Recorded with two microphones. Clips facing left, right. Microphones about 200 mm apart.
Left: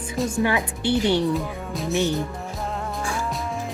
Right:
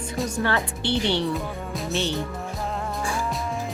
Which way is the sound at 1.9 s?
15° left (ahead or behind).